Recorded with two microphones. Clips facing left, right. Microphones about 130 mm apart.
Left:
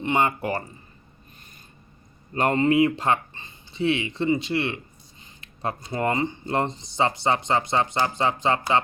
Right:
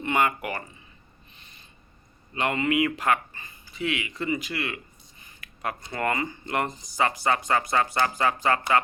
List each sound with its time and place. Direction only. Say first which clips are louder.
0.0 s speech: left 2 dB; 25° left (ahead or behind)
2.3 s speech: left 5 dB; 40° left (ahead or behind)
5.2 s a sound: left 3 dB; 25° left (ahead or behind)
5.9 s speech: left 3 dB; 25° left (ahead or behind)